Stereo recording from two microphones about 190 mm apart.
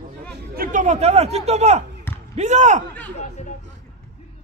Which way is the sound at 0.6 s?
40° right (ahead or behind).